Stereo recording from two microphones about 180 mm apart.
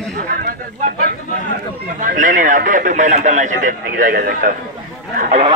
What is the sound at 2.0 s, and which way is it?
A man's voice, 45° right (ahead or behind).